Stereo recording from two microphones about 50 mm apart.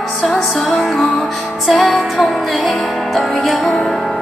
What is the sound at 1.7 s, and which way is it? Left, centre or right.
Music, centre.